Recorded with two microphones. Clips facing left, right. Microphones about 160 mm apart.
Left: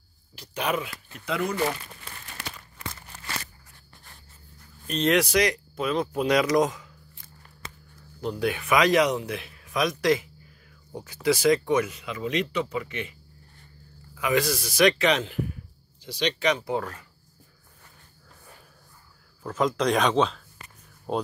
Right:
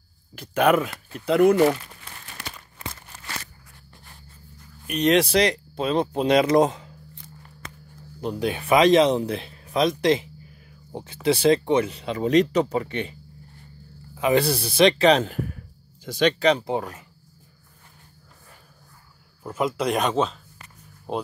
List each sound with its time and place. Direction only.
0.4 s speech: 55° right (ahead or behind)
4.8 s speech: 15° right (ahead or behind)
5.1 s speech: 30° right (ahead or behind)
8.2 s speech: 20° right (ahead or behind)
14.1 s speech: 30° right (ahead or behind)
15.2 s a sound: 45° right (ahead or behind)
16.3 s speech: 35° right (ahead or behind)
16.7 s speech: 15° right (ahead or behind)
19.4 s speech: 10° right (ahead or behind)